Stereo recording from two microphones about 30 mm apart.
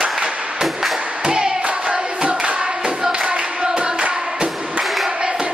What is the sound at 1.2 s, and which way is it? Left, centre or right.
Hands, right.